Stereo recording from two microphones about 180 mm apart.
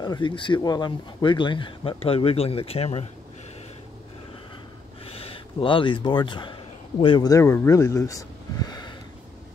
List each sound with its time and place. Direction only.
0.0 s speech: 25° left (ahead or behind)
5.0 s speech: 30° left (ahead or behind)